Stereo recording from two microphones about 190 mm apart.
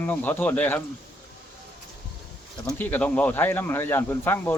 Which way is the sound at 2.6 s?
10° left (ahead or behind).